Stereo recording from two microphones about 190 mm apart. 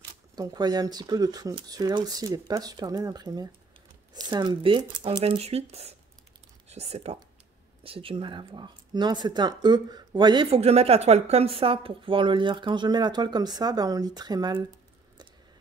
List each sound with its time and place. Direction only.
0.4 s speech: 20° right (ahead or behind)